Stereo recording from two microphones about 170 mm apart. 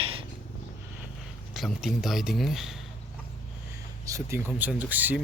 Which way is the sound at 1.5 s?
Centre (ahead or behind).